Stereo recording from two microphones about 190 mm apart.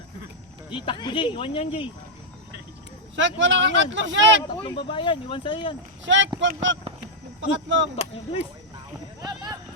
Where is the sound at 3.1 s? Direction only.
75° right (ahead or behind).